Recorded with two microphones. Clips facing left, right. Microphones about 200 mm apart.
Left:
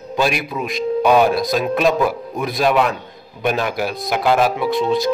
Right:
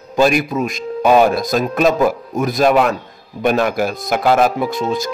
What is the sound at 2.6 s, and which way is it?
Speech, 45° right (ahead or behind).